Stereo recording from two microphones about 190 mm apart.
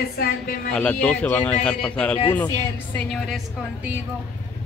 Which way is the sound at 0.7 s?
5° left (ahead or behind).